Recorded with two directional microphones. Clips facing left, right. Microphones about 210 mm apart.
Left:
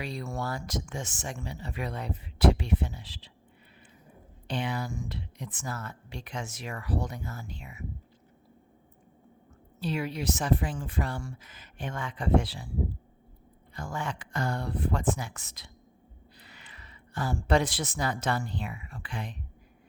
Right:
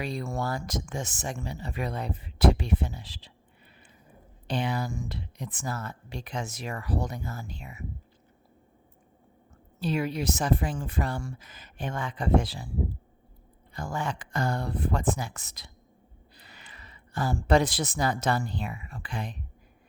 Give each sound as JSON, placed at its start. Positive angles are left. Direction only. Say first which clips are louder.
{"t": 0.0, "sound": "speech", "louder": "right 3 dB", "side_deg": -50}
{"t": 4.4, "sound": "speech", "louder": "right 3 dB", "side_deg": -40}
{"t": 9.8, "sound": "speech", "louder": "right 3 dB", "side_deg": -45}
{"t": 13.7, "sound": "speech", "louder": "right 3 dB", "side_deg": -35}